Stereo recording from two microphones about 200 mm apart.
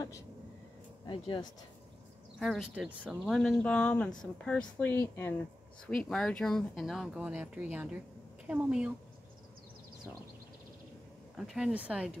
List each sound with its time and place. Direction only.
1.0 s speech: 25° left (ahead or behind)
2.3 s speech: centre (ahead or behind)
11.3 s speech: centre (ahead or behind)